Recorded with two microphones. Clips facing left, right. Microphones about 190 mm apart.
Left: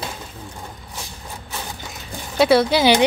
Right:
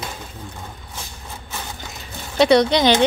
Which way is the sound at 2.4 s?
5° left (ahead or behind).